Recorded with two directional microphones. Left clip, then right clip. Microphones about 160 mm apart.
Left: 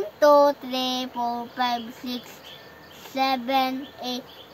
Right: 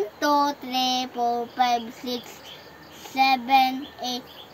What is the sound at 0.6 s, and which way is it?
Child singing, 25° left (ahead or behind).